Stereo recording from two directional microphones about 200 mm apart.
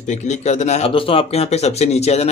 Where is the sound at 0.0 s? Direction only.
35° left (ahead or behind).